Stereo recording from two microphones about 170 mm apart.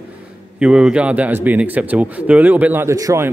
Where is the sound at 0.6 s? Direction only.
5° right (ahead or behind).